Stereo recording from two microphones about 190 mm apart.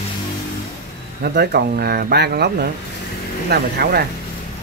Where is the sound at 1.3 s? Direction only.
55° right (ahead or behind).